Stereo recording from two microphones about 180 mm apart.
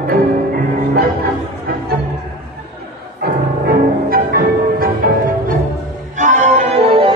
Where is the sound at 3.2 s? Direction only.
55° right (ahead or behind).